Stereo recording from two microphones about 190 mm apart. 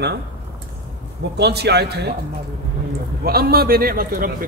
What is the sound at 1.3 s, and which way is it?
Speech, 60° right (ahead or behind).